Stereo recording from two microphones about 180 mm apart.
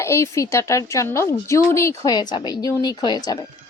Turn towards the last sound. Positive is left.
turn(degrees=25)  # may be behind; listen again after turning